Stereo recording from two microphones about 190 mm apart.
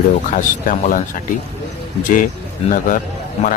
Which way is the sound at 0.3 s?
45° left (ahead or behind).